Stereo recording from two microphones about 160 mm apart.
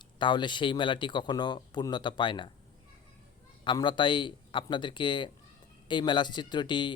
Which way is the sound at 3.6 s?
30° left (ahead or behind).